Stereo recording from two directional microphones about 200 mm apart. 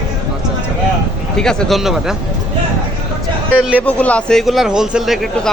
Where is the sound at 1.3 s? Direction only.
Centre (ahead or behind).